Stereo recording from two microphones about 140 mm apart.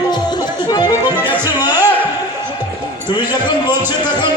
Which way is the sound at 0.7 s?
30° left (ahead or behind).